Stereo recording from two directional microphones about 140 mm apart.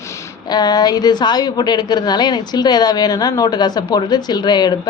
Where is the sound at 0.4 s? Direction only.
30° left (ahead or behind).